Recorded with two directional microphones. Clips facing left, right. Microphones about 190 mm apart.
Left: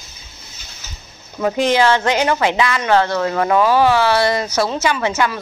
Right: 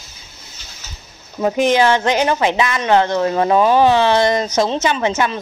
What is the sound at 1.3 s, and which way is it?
A woman's voice, 20° right (ahead or behind).